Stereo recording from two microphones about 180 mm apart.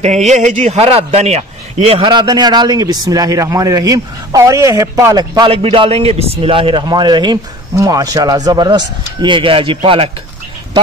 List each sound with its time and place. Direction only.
0.0 s a man's voice: 40° right (ahead or behind)